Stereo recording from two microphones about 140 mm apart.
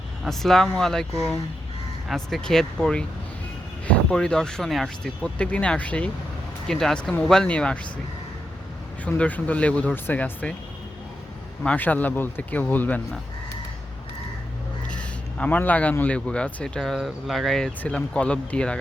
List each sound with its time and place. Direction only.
0.3 s speech: centre (ahead or behind)
2.0 s speech: centre (ahead or behind)
9.0 s speech: 10° left (ahead or behind)
11.6 s speech: 10° left (ahead or behind)
14.8 s speech: 10° left (ahead or behind)